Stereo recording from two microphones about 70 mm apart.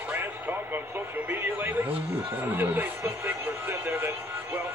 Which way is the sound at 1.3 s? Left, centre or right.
Right.